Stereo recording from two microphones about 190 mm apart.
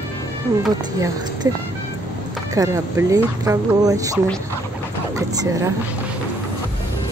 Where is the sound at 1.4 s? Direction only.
20° right (ahead or behind).